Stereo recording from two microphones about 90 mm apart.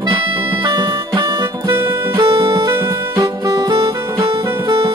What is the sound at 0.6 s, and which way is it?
Music, 55° right (ahead or behind).